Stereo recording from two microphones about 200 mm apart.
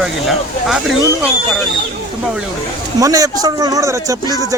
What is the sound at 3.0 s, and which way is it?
Speech, 15° right (ahead or behind).